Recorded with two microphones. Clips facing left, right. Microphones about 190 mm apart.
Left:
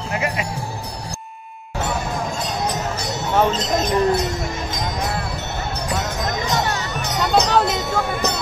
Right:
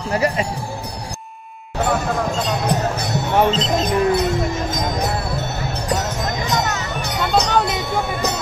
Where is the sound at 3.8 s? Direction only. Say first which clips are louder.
Right 1 dB; 60° right (ahead or behind).